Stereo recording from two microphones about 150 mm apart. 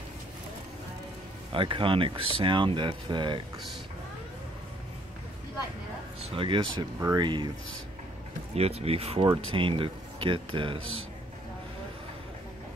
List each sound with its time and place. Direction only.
1.5 s speech: 35° right (ahead or behind)
6.3 s speech: 35° right (ahead or behind)
8.5 s speech: 45° right (ahead or behind)